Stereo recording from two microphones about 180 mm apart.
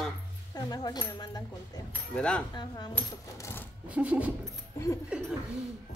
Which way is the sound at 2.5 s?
25° left (ahead or behind).